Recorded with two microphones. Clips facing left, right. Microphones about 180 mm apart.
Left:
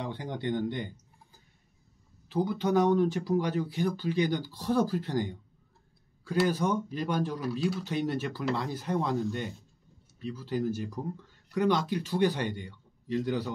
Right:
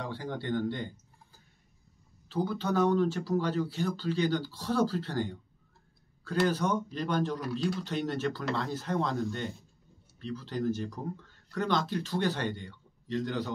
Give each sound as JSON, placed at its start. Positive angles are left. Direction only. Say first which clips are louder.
{"t": 0.0, "sound": "speech", "louder": "left 2 dB", "side_deg": 20}
{"t": 2.2, "sound": "speech", "louder": "left 3 dB", "side_deg": 15}